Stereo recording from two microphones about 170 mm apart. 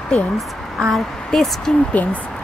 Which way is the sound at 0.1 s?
5° left (ahead or behind).